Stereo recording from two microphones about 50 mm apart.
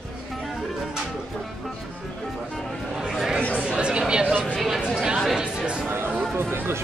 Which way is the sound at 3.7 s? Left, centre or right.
Centre.